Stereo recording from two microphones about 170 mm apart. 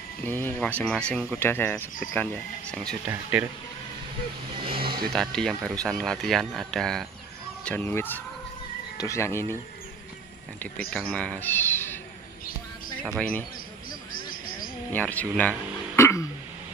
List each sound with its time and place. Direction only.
0.2 s speech: 10° left (ahead or behind)
3.1 s speech: 10° right (ahead or behind)
4.6 s speech: 30° right (ahead or behind)
5.1 s speech: 5° left (ahead or behind)
10.9 s a man's voice: 5° left (ahead or behind)
14.3 s a sound: 55° left (ahead or behind)
14.9 s speech: 10° left (ahead or behind)
16.0 s a sound: 15° left (ahead or behind)